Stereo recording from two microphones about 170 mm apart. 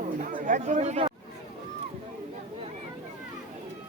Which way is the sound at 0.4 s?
45° right (ahead or behind).